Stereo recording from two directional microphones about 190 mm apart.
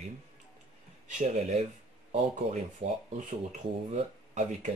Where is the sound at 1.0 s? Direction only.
40° right (ahead or behind).